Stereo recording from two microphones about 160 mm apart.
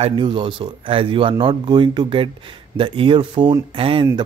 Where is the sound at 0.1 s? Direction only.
30° right (ahead or behind).